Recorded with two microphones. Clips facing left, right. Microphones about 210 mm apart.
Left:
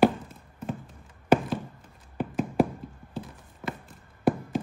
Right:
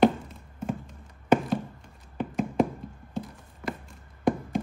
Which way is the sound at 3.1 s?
25° left (ahead or behind).